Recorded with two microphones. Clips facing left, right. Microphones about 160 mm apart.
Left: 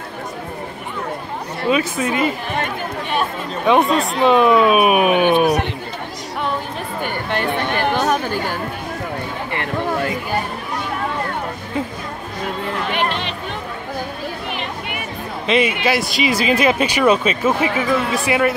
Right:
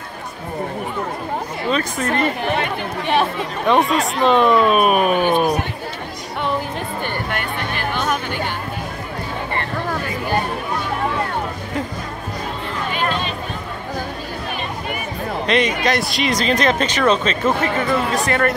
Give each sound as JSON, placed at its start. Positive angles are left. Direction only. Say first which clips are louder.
{"t": 1.7, "sound": "speech", "louder": "left 3 dB", "side_deg": 5}
{"t": 3.6, "sound": "speech", "louder": "left 2 dB", "side_deg": 0}
{"t": 7.9, "sound": "chatter", "louder": "left 4 dB", "side_deg": 40}
{"t": 12.9, "sound": "a sound", "louder": "right 1 dB", "side_deg": 65}
{"t": 15.4, "sound": "speech", "louder": "left 1 dB", "side_deg": 5}